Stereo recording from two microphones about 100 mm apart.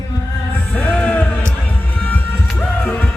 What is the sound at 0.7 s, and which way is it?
Music, 15° left (ahead or behind).